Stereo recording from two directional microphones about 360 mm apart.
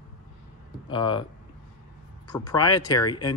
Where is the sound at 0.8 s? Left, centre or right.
Centre.